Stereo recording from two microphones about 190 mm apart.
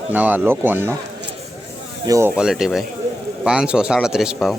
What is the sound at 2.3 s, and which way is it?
Speech, 5° right (ahead or behind).